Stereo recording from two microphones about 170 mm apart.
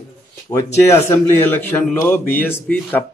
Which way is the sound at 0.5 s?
15° left (ahead or behind).